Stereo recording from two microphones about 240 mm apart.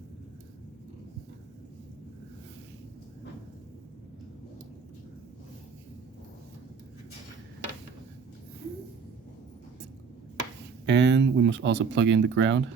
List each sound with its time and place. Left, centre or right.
10.8 s speech: right